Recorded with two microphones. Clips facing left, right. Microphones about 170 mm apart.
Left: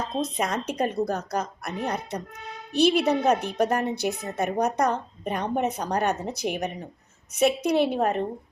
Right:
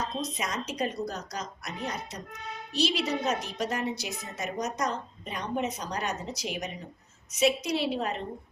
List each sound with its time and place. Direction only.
0.2 s a woman's voice: 55° left (ahead or behind)